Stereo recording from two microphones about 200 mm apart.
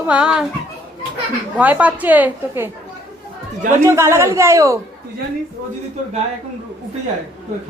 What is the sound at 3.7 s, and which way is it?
A woman's voice, 15° right (ahead or behind).